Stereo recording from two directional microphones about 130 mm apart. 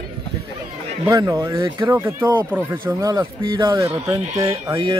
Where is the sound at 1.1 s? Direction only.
25° right (ahead or behind).